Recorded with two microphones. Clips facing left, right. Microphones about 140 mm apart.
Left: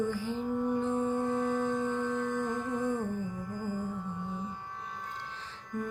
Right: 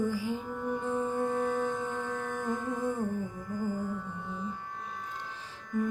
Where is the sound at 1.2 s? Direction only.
45° right (ahead or behind).